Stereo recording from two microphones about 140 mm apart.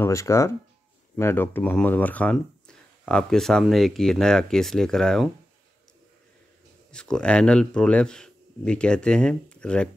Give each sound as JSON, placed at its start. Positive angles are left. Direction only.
{"t": 0.0, "sound": "speech", "side_deg": 20}
{"t": 6.9, "sound": "speech", "side_deg": 5}